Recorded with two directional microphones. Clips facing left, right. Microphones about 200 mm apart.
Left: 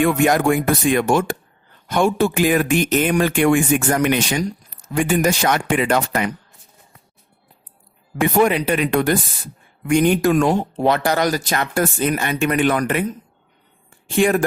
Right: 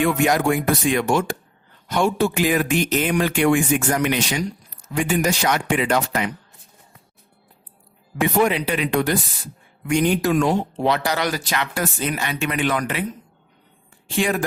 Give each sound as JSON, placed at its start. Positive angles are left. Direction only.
{"t": 0.0, "sound": "speech", "side_deg": 50}
{"t": 8.2, "sound": "speech", "side_deg": 50}
{"t": 14.2, "sound": "speech", "side_deg": 50}